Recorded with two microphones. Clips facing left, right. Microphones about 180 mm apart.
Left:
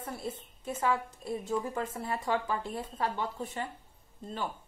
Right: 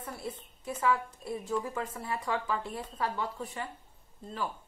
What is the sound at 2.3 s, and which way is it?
Speech, 40° left (ahead or behind).